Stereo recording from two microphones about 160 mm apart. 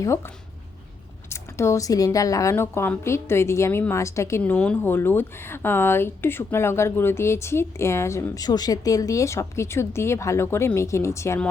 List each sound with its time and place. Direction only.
0.0 s a woman's voice: 15° left (ahead or behind)
1.3 s a woman's voice: 15° left (ahead or behind)